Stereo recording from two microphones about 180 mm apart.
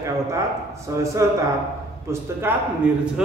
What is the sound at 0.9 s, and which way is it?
Speech, 15° right (ahead or behind).